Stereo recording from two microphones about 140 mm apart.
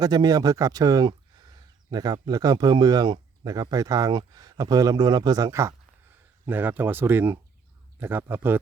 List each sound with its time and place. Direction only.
0.0 s a man's voice: 30° right (ahead or behind)